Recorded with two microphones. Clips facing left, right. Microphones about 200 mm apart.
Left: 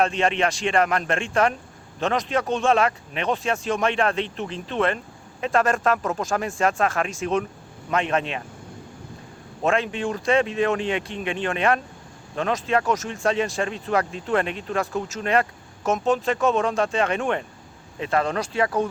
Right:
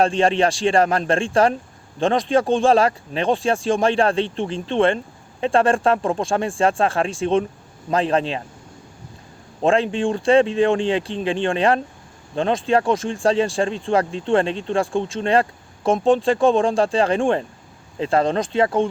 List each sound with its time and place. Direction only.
0.0 s speech: 30° right (ahead or behind)
9.6 s speech: 30° right (ahead or behind)